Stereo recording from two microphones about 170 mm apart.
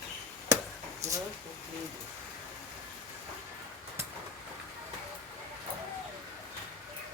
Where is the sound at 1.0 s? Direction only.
40° right (ahead or behind).